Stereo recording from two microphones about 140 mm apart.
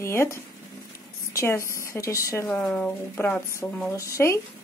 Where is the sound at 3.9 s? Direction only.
20° left (ahead or behind).